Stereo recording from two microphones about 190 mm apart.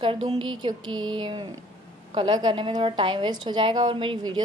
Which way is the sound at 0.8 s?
90° right.